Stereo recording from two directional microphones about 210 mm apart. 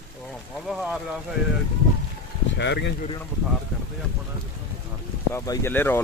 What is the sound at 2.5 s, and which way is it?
Speech, 55° left (ahead or behind).